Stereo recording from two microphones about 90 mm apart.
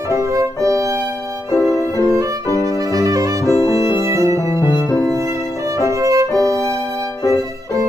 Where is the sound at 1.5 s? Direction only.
35° left (ahead or behind).